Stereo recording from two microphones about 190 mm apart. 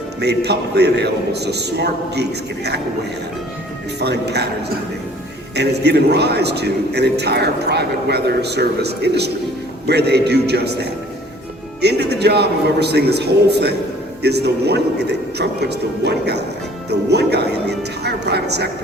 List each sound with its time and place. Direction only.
0.2 s a man's voice: 60° right (ahead or behind)
4.0 s a man's voice: 60° right (ahead or behind)
5.5 s a man's voice: 60° right (ahead or behind)
11.8 s a man's voice: 60° right (ahead or behind)